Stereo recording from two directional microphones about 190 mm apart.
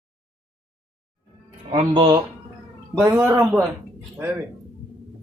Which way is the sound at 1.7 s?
30° right (ahead or behind).